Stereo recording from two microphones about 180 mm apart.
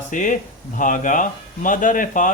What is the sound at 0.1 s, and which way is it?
Speech, 45° left (ahead or behind).